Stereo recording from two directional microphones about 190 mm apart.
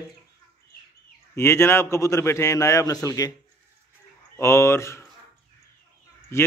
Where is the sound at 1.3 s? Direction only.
15° left (ahead or behind).